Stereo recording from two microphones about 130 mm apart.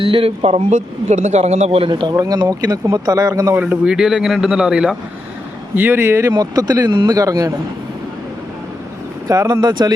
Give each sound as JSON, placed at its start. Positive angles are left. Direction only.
{"t": 0.0, "sound": "speech", "side_deg": -45}
{"t": 1.9, "sound": "speech", "side_deg": -35}
{"t": 3.6, "sound": "speech", "side_deg": -10}
{"t": 9.3, "sound": "speech", "side_deg": -25}